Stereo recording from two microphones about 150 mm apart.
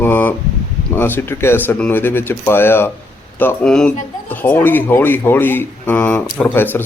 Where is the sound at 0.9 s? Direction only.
15° left (ahead or behind).